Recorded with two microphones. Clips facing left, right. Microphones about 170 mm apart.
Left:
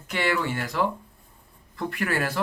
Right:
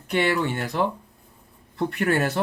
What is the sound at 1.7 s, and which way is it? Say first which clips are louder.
Speech: right 5 dB; 25° right (ahead or behind).